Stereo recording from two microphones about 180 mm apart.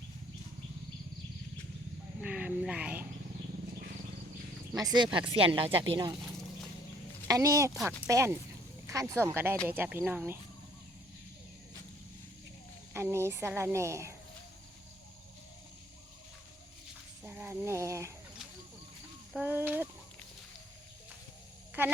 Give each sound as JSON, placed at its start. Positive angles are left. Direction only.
{"t": 2.2, "sound": "speech", "side_deg": -10}
{"t": 4.7, "sound": "speech", "side_deg": -20}
{"t": 7.3, "sound": "speech", "side_deg": -15}
{"t": 12.9, "sound": "speech", "side_deg": -15}
{"t": 17.2, "sound": "a sound", "side_deg": -10}
{"t": 19.4, "sound": "speech", "side_deg": -10}
{"t": 21.8, "sound": "speech", "side_deg": -10}